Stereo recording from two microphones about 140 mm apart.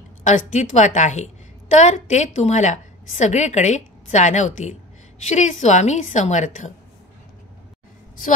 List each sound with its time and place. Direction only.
0.2 s a woman's voice: 60° left (ahead or behind)